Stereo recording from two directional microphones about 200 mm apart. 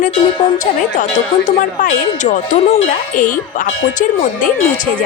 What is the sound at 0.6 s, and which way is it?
Speech, 40° left (ahead or behind).